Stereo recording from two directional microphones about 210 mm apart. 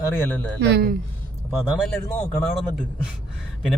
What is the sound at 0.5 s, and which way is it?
Speech, 50° right (ahead or behind).